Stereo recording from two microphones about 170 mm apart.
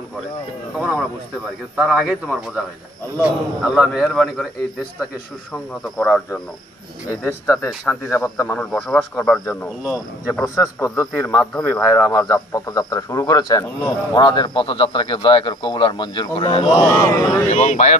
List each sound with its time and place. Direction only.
1.8 s speech: centre (ahead or behind)
5.9 s speech: 5° left (ahead or behind)
10.4 s a man's voice: 20° left (ahead or behind)
17.5 s speech: 45° left (ahead or behind)